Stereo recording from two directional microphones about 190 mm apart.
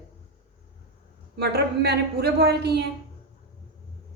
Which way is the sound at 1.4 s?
60° right (ahead or behind).